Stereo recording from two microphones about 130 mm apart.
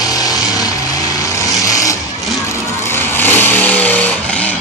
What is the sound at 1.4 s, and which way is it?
Vehicle, 25° left (ahead or behind).